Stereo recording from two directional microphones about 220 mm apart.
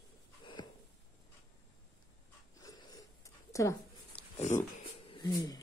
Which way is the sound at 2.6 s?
15° left (ahead or behind).